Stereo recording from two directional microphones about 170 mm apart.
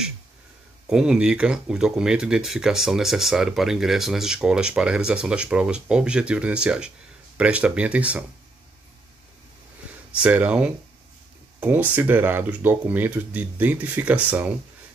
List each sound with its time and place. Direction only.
0.8 s speech: 5° right (ahead or behind)
10.1 s speech: 10° right (ahead or behind)